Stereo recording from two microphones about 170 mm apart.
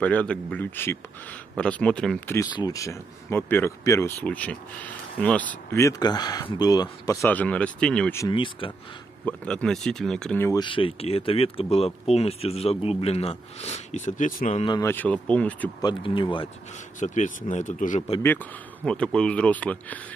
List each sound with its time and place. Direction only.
0.0 s speech: 10° left (ahead or behind)
8.3 s speech: 30° left (ahead or behind)
9.2 s speech: 5° left (ahead or behind)
10.6 s speech: 30° left (ahead or behind); by 14.6 s 50° left (ahead or behind)
14.8 s speech: 10° left (ahead or behind)
15.8 s speech: 30° left (ahead or behind)
17.0 s speech: 45° left (ahead or behind)
18.2 s speech: 10° left (ahead or behind)